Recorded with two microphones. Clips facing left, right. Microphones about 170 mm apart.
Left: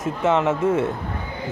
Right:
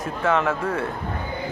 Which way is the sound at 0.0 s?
25° left (ahead or behind).